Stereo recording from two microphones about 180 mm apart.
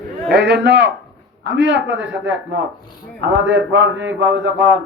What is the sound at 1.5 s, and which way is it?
A man's voice, 90° right.